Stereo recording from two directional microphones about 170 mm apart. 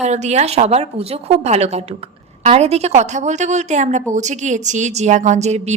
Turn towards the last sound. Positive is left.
turn(degrees=-40)  # may be behind; listen again after turning